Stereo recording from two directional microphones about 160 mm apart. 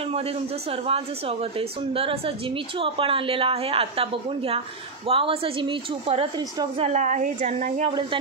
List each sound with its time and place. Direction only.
0.7 s a woman's voice: 40° right (ahead or behind)
6.8 s a woman's voice: 50° right (ahead or behind)